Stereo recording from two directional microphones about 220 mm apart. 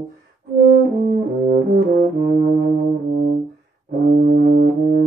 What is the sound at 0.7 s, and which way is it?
Brass instrument, 45° right (ahead or behind).